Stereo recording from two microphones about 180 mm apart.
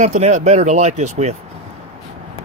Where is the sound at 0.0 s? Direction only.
40° right (ahead or behind).